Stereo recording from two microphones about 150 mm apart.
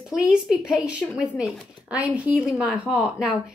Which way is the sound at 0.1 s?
5° right (ahead or behind).